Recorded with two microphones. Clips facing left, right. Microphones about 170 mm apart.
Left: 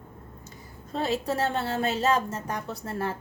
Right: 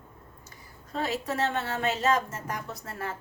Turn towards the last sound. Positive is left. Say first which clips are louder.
# left 5 dB
turn(degrees=30)  # may be behind; listen again after turning